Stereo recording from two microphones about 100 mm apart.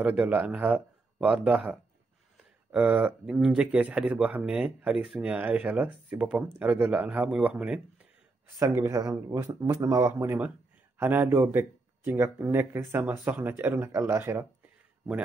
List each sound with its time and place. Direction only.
0.0 s speech: 15° right (ahead or behind)
3.3 s speech: 5° right (ahead or behind)
8.7 s speech: 30° right (ahead or behind)